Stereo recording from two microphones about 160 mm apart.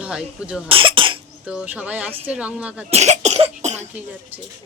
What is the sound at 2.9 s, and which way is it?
Cough, 45° right (ahead or behind).